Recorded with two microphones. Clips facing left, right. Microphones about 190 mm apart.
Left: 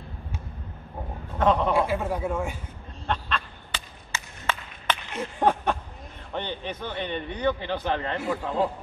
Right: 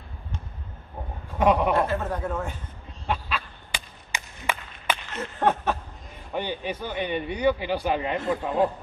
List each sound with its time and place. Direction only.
1.4 s a man's voice: 10° right (ahead or behind)
1.7 s speech: 10° left (ahead or behind)
3.1 s duck: 10° right (ahead or behind)
5.1 s a sound: 10° left (ahead or behind)
6.3 s a man's voice: 10° right (ahead or behind)